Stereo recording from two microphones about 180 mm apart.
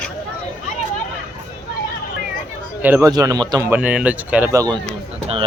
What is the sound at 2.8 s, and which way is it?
Speech, 10° right (ahead or behind).